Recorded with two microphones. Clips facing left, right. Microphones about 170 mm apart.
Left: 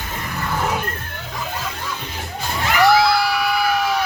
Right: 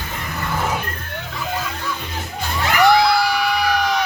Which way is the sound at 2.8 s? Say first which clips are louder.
Right 1 dB; centre (ahead or behind).